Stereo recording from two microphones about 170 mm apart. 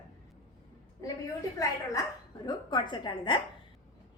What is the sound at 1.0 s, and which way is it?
A woman's voice, 20° left (ahead or behind).